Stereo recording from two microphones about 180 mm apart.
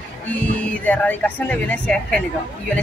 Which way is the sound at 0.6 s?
10° left (ahead or behind).